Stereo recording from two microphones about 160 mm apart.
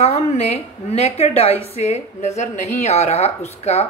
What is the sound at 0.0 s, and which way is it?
A woman's voice, 40° left (ahead or behind).